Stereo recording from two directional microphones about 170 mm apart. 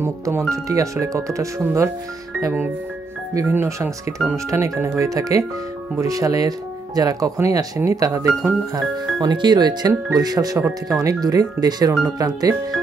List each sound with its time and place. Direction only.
0.0 s speech: 15° right (ahead or behind)